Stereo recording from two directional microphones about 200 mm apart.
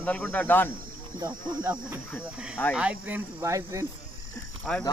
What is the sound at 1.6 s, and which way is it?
Speech, 5° right (ahead or behind).